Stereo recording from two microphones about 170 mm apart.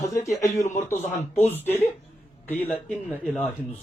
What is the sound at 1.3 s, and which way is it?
Speech, 10° left (ahead or behind).